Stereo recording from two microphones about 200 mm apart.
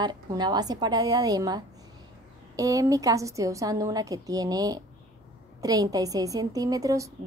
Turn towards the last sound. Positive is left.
turn(degrees=-15)  # may be behind; listen again after turning